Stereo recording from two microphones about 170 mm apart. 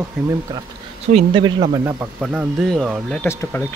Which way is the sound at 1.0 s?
25° right (ahead or behind).